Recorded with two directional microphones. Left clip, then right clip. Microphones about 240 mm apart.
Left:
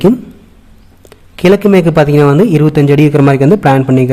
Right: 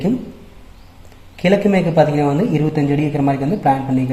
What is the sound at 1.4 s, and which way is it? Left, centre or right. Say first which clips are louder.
A man's voice: left 7 dB; left.